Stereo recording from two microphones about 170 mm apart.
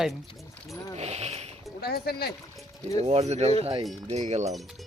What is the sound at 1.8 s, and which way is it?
Speech, 65° left (ahead or behind).